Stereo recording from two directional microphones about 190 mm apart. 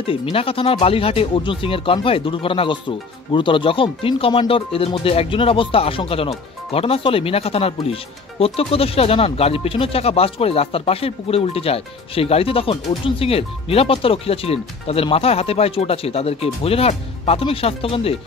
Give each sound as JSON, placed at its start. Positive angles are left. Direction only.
{"t": 0.0, "sound": "speech", "side_deg": 30}